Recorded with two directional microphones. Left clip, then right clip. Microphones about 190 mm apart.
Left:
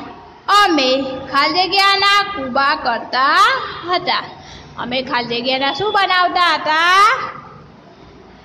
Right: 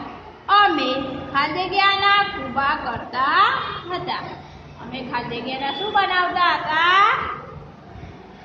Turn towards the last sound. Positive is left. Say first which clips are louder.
# left 4 dB
turn(degrees=50)  # may be behind; listen again after turning